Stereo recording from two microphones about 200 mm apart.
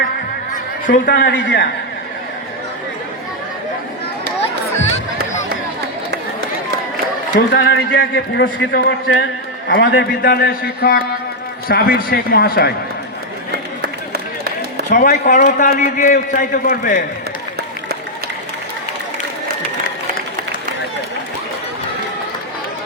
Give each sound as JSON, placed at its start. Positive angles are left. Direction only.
{"t": 0.5, "sound": "speech", "side_deg": 40}
{"t": 7.6, "sound": "a man's voice", "side_deg": 60}
{"t": 14.8, "sound": "a man's voice", "side_deg": 40}